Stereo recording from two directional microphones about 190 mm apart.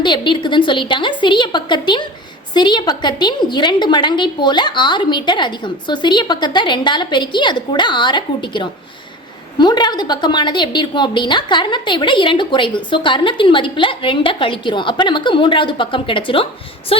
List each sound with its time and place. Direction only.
0.0 s a woman's voice: 25° left (ahead or behind)